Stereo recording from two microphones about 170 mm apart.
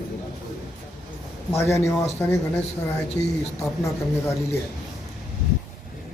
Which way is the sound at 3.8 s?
15° left (ahead or behind).